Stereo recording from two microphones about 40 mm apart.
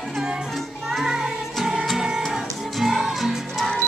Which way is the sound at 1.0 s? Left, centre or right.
Centre.